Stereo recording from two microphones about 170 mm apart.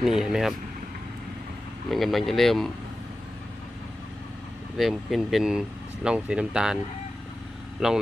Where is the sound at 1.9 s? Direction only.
Centre (ahead or behind).